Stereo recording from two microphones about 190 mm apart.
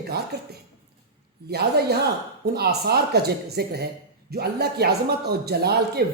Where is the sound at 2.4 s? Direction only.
55° right (ahead or behind).